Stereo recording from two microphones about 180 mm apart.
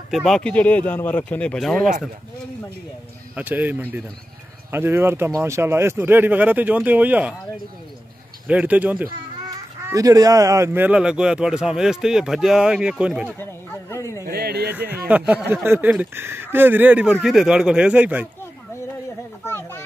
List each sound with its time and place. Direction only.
0.1 s speech: centre (ahead or behind)
3.3 s speech: 10° right (ahead or behind)
8.5 s speech: 10° right (ahead or behind)
13.4 s speech: 15° left (ahead or behind)
14.2 s speech: 60° right (ahead or behind)
14.7 s speech: 10° right (ahead or behind)
19.4 s a sound: 15° left (ahead or behind)